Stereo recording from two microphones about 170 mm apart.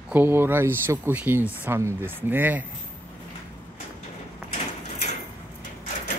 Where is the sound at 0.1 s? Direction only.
15° right (ahead or behind).